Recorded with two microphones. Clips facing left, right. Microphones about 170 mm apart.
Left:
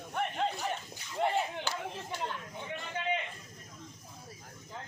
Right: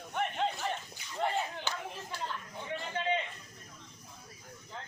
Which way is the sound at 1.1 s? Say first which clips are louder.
Left 2 dB; 15° left (ahead or behind).